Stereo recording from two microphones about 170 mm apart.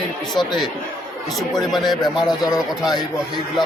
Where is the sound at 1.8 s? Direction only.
25° left (ahead or behind).